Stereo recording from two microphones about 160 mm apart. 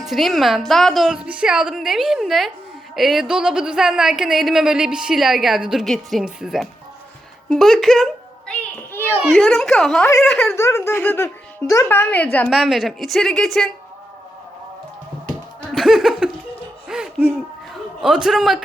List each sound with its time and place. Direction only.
0.1 s a woman's voice: centre (ahead or behind)
9.0 s a child's voice: 10° right (ahead or behind)
9.3 s a woman's voice: centre (ahead or behind)
10.5 s speech: 15° left (ahead or behind)
12.5 s a woman's voice: centre (ahead or behind)
15.7 s speech: centre (ahead or behind)
16.9 s hoot: 5° right (ahead or behind)
18.0 s a woman's voice: 5° right (ahead or behind)